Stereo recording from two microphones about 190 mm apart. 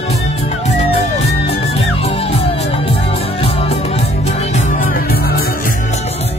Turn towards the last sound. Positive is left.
turn(degrees=50)  # may be behind; listen again after turning